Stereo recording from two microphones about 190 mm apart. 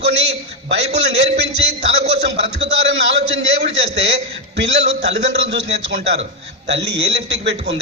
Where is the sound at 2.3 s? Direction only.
35° right (ahead or behind).